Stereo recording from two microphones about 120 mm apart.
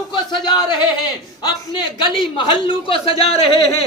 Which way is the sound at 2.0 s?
45° left (ahead or behind).